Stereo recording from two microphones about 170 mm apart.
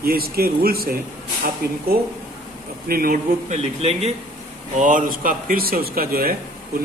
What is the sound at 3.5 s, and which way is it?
Speech, 35° right (ahead or behind).